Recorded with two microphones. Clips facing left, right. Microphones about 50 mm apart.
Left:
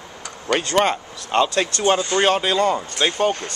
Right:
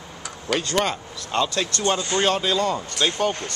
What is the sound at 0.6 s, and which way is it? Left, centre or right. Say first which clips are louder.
Speech: left 5 dB; left.